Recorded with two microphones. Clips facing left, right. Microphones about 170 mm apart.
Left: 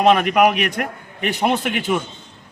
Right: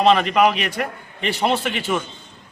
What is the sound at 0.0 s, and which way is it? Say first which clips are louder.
Speech: left 1 dB; 10° left (ahead or behind).